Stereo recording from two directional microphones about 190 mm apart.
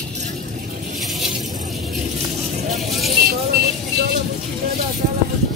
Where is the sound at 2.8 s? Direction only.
Centre (ahead or behind).